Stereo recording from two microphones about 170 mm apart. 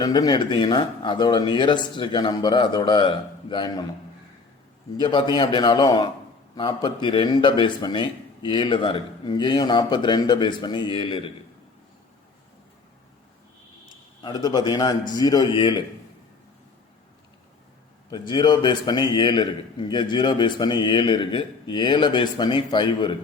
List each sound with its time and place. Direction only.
0.0 s speech: 25° left (ahead or behind)
4.9 s speech: 25° left (ahead or behind)
14.2 s speech: 25° left (ahead or behind)
18.1 s speech: 25° left (ahead or behind)